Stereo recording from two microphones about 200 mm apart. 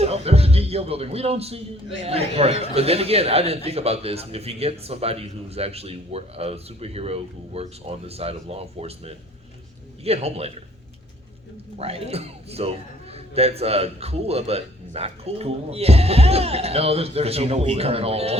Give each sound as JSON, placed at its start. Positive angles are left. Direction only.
{"t": 0.0, "sound": "speech", "side_deg": -30}
{"t": 11.8, "sound": "speech", "side_deg": -30}